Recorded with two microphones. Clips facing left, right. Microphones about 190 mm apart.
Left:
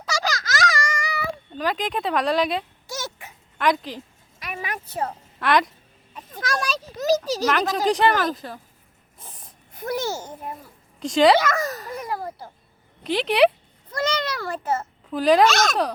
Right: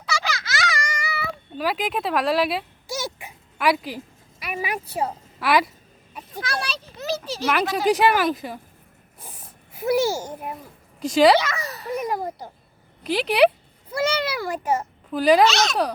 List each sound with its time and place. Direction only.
0.0 s a sound: 40° left (ahead or behind)
1.5 s speech: 5° right (ahead or behind)
6.4 s a child's voice: 45° left (ahead or behind)
7.9 s speech: 5° right (ahead or behind)
9.2 s a sound: 10° right (ahead or behind)
11.0 s speech: 5° right (ahead or behind)
11.3 s a child's voice: 45° left (ahead or behind)
11.9 s speech: 20° right (ahead or behind)
13.0 s a child's voice: centre (ahead or behind)
15.1 s speech: centre (ahead or behind)
15.4 s a child's voice: 50° left (ahead or behind)